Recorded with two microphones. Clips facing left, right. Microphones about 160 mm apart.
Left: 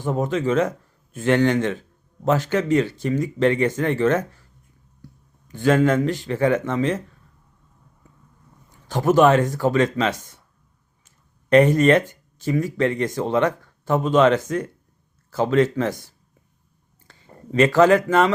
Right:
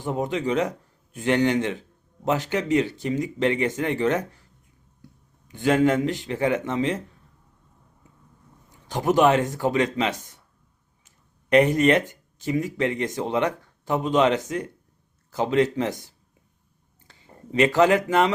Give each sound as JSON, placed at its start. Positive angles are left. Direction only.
{"t": 0.0, "sound": "speech", "side_deg": -15}
{"t": 5.0, "sound": "a sound", "side_deg": -20}
{"t": 6.1, "sound": "speech", "side_deg": -20}
{"t": 8.9, "sound": "speech", "side_deg": -20}
{"t": 17.1, "sound": "a sound", "side_deg": -15}
{"t": 17.5, "sound": "speech", "side_deg": -20}